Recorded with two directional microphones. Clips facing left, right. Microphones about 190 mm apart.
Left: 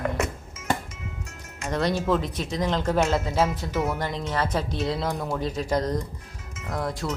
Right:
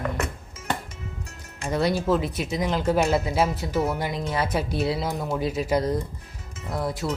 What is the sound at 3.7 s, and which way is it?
Speech, 35° right (ahead or behind).